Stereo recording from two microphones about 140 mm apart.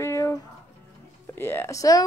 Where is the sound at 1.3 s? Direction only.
15° left (ahead or behind).